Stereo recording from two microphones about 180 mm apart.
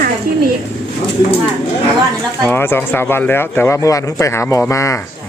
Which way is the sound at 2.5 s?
10° left (ahead or behind).